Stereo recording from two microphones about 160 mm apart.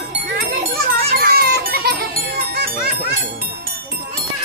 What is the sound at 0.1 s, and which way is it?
Children playing, 90° right.